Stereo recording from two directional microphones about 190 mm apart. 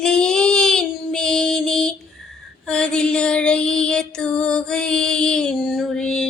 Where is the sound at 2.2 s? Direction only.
5° left (ahead or behind).